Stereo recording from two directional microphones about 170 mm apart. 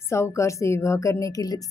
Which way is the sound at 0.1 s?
15° left (ahead or behind).